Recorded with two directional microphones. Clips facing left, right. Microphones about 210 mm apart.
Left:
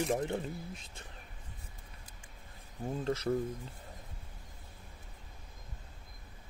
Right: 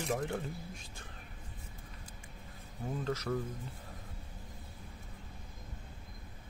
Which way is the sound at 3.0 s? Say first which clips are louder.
Left 4 dB; 30° left (ahead or behind).